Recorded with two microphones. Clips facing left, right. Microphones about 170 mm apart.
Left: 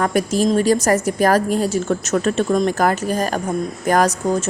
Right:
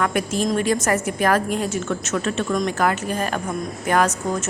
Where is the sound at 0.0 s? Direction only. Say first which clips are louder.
Left 4 dB; 35° left (ahead or behind).